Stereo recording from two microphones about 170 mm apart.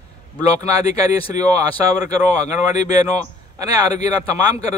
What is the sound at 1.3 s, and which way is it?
A man's voice, 20° right (ahead or behind).